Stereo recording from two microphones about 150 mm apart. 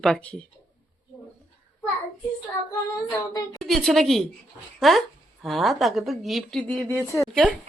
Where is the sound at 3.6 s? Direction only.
5° left (ahead or behind).